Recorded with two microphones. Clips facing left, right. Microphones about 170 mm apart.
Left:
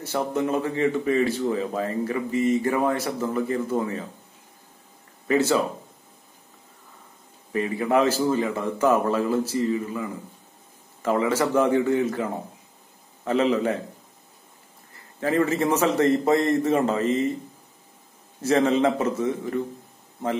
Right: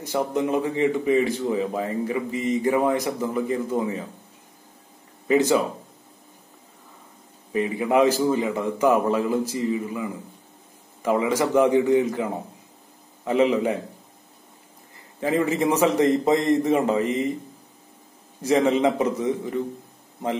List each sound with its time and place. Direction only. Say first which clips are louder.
0.0 s a man's voice: right 1 dB; 15° right (ahead or behind)
5.3 s a man's voice: right 2 dB; 15° right (ahead or behind)
7.5 s a man's voice: right 1 dB; 15° right (ahead or behind)
15.1 s a man's voice: even; 15° right (ahead or behind)
18.4 s a man's voice: right 1 dB; 15° right (ahead or behind)